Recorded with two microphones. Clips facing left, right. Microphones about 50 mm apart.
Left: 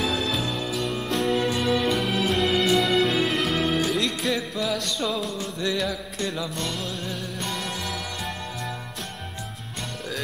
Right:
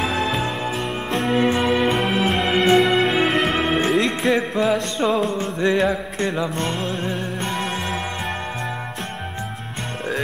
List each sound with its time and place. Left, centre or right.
0.0 s music: right
1.9 s music: right
2.1 s music: right